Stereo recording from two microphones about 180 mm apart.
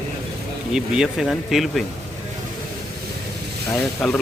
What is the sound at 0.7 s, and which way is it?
Speech, 5° right (ahead or behind).